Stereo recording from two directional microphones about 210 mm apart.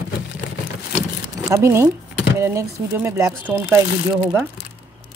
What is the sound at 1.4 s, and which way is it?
Speech, 15° right (ahead or behind).